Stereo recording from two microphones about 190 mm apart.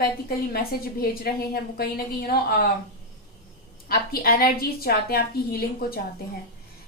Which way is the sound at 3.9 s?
50° left (ahead or behind).